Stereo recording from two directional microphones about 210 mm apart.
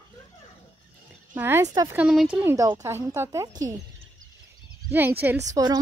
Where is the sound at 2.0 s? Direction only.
5° right (ahead or behind).